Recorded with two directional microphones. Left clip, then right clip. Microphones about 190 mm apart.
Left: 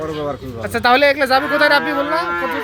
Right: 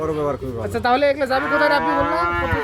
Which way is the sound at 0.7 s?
10° left (ahead or behind).